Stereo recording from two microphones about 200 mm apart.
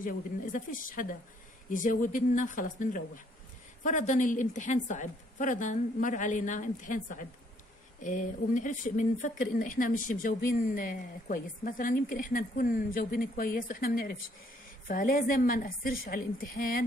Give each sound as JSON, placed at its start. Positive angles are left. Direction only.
{"t": 0.0, "sound": "a woman's voice", "side_deg": 45}